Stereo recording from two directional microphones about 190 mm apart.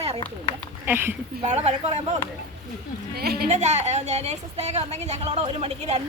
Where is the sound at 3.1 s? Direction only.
55° right (ahead or behind).